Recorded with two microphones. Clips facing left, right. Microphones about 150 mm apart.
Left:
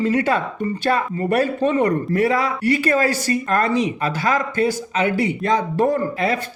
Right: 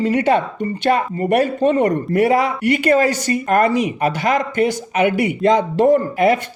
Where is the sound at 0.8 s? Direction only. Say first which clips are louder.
Right 4 dB; 15° right (ahead or behind).